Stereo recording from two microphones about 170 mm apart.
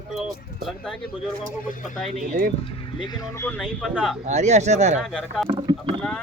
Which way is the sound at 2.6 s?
25° left (ahead or behind).